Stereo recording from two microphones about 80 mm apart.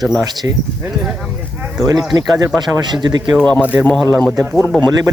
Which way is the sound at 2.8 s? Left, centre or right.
Right.